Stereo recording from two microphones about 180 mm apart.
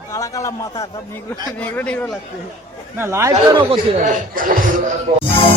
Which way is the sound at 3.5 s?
25° right (ahead or behind).